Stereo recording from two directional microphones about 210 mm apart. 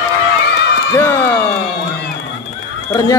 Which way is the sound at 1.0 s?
10° left (ahead or behind).